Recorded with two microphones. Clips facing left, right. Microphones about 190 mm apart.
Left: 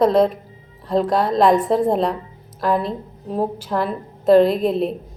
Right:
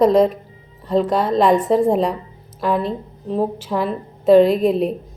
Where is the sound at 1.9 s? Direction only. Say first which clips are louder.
Right 1 dB; 10° right (ahead or behind).